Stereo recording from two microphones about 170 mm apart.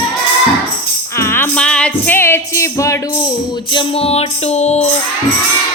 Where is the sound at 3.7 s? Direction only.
35° left (ahead or behind).